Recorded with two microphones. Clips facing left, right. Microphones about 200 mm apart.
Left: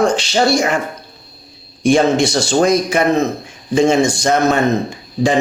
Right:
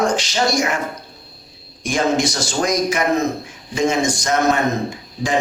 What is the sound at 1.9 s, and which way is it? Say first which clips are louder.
A man's voice: left 6 dB; 30° left (ahead or behind).